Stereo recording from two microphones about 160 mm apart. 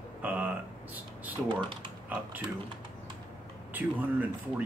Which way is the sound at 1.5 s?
30° right (ahead or behind).